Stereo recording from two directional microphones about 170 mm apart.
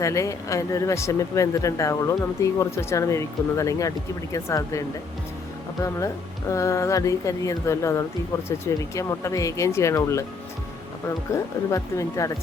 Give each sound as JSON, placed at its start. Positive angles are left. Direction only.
{"t": 0.0, "sound": "speech", "side_deg": 20}
{"t": 6.5, "sound": "speech", "side_deg": 20}
{"t": 11.3, "sound": "speech", "side_deg": 20}